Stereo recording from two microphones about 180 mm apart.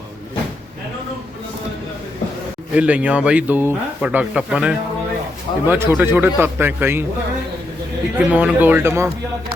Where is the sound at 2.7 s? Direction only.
5° right (ahead or behind).